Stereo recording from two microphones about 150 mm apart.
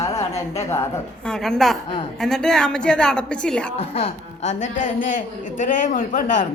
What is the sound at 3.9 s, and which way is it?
Speech, 45° left (ahead or behind).